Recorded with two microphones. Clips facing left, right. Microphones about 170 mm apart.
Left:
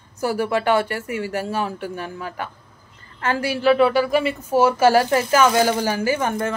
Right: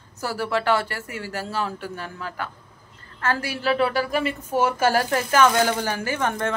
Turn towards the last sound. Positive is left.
turn(degrees=10)  # may be behind; listen again after turning